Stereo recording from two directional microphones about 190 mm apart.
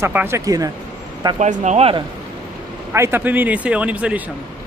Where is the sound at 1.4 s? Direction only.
40° right (ahead or behind).